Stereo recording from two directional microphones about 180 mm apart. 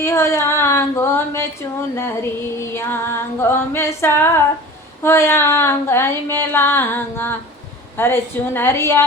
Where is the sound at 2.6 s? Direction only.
15° left (ahead or behind).